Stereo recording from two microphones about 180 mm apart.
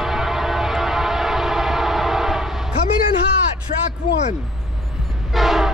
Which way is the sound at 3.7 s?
50° left (ahead or behind).